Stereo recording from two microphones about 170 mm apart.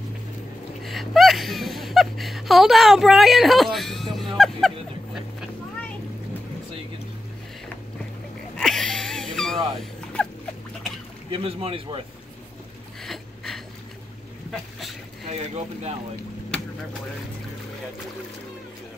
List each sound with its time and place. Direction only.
0.8 s whimper: centre (ahead or behind)
8.5 s wheeze: 5° left (ahead or behind)
10.2 s dog: 5° left (ahead or behind)
11.3 s speech: 35° right (ahead or behind)
13.0 s a sound: centre (ahead or behind)
15.3 s speech: 40° right (ahead or behind)